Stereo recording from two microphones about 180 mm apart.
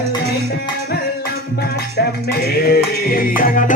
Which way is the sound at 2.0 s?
65° left (ahead or behind).